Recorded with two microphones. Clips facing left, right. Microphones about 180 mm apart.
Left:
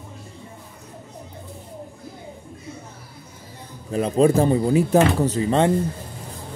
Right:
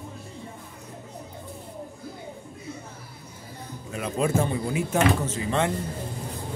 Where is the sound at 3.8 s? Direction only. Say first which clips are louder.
Left 9 dB; 35° left (ahead or behind).